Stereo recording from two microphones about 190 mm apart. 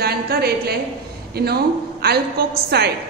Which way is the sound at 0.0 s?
55° right (ahead or behind).